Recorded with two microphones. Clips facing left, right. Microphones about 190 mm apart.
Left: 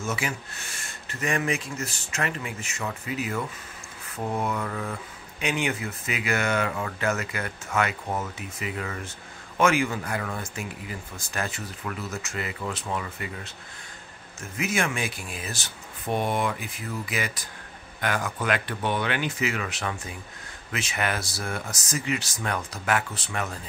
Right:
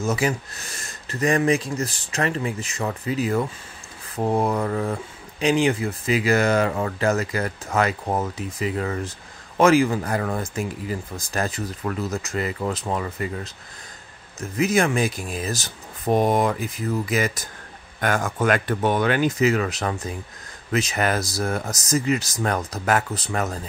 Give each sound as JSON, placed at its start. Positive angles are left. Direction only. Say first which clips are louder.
{"t": 0.0, "sound": "speech", "louder": "right 7 dB", "side_deg": -40}
{"t": 14.6, "sound": "speech", "louder": "right 8 dB", "side_deg": -35}